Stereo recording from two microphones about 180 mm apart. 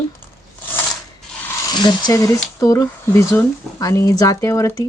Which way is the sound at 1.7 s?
25° left (ahead or behind).